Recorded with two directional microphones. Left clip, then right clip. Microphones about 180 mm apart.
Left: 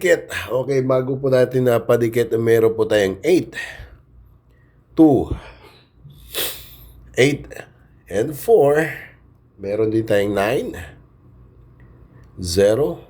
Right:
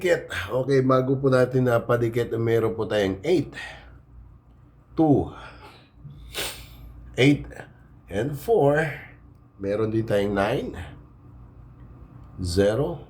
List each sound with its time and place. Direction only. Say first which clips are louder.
0.0 s speech: left 6 dB; 40° left (ahead or behind)
4.9 s speech: left 7 dB; 40° left (ahead or behind)
6.1 s snort: left 5 dB; 35° left (ahead or behind)
9.6 s speech: left 6 dB; 25° left (ahead or behind)
12.4 s speech: left 7 dB; 35° left (ahead or behind)